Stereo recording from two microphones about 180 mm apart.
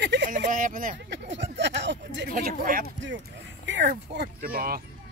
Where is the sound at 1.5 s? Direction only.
75° right (ahead or behind).